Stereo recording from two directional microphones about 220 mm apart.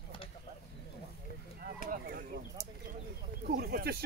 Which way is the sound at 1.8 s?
40° right (ahead or behind).